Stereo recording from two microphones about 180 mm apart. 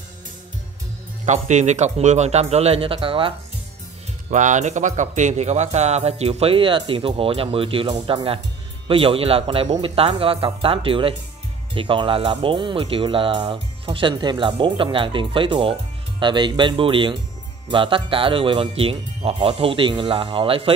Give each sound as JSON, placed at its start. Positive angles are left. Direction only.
{"t": 1.2, "sound": "speech", "side_deg": -40}
{"t": 4.3, "sound": "speech", "side_deg": -40}